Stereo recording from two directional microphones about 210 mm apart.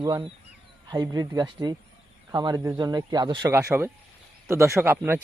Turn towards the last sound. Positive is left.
turn(degrees=-10)  # may be behind; listen again after turning